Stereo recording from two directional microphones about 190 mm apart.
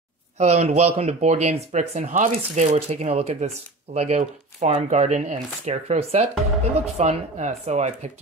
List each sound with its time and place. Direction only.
0.4 s speech: 35° right (ahead or behind)